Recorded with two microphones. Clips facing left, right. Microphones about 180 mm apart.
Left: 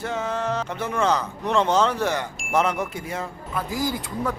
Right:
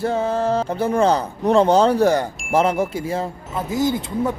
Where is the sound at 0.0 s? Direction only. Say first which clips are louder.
Right 7 dB; 35° right (ahead or behind).